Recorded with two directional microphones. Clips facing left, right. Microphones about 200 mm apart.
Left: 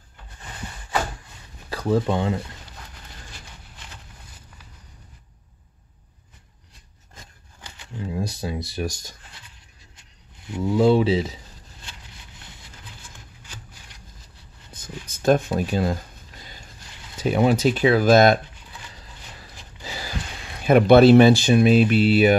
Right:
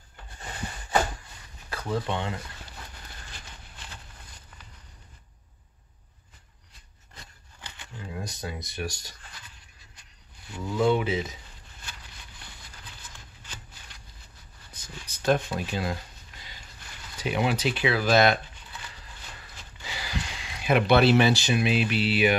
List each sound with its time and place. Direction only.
1.7 s speech: 35° left (ahead or behind)
8.1 s speech: 30° left (ahead or behind)
10.4 s speech: 20° left (ahead or behind)
14.7 s a sound: 50° left (ahead or behind)
17.2 s speech: 45° left (ahead or behind)
19.8 s speech: 40° left (ahead or behind)